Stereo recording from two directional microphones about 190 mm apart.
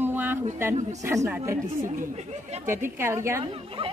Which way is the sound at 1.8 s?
40° right (ahead or behind).